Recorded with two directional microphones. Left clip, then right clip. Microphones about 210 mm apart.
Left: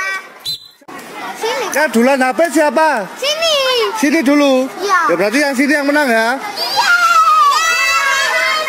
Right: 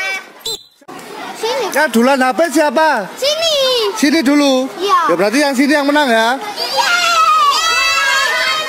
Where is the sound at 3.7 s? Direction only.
25° right (ahead or behind).